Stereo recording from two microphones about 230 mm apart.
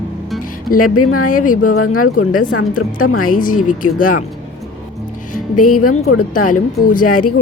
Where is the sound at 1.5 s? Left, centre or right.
Left.